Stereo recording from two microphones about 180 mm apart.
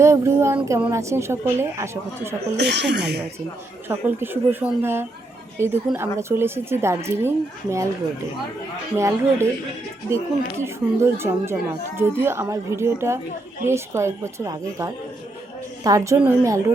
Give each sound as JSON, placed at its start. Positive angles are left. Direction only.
{"t": 0.0, "sound": "a woman's voice", "side_deg": -15}
{"t": 2.6, "sound": "speech", "side_deg": -70}
{"t": 3.8, "sound": "a woman's voice", "side_deg": -10}
{"t": 9.0, "sound": "a woman's voice", "side_deg": -15}
{"t": 10.6, "sound": "a woman's voice", "side_deg": -15}